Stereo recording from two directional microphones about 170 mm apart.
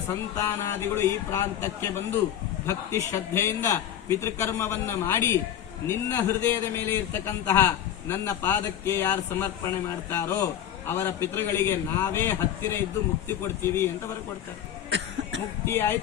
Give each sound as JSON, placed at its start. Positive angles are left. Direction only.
{"t": 0.1, "sound": "a man's voice", "side_deg": 15}
{"t": 14.8, "sound": "cough", "side_deg": -90}
{"t": 15.6, "sound": "a man's voice", "side_deg": 15}